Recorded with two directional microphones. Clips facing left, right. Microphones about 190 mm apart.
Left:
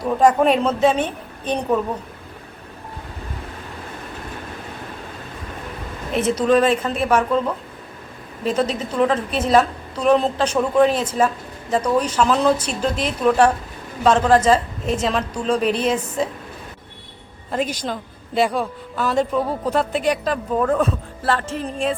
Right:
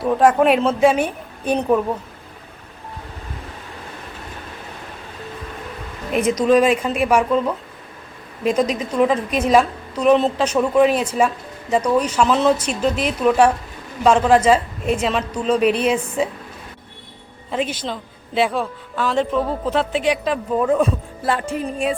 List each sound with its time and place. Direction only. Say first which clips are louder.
0.0 s a woman's voice: right 1 dB; 5° right (ahead or behind)
6.5 s a woman's voice: right 2 dB; 10° right (ahead or behind)
17.6 s a woman's voice: even; 40° left (ahead or behind)
18.3 s a man's voice: even; centre (ahead or behind)
20.1 s a woman's voice: right 1 dB; 5° right (ahead or behind)